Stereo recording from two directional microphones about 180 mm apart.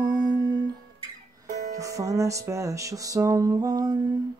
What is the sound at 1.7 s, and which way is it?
Music, 20° right (ahead or behind).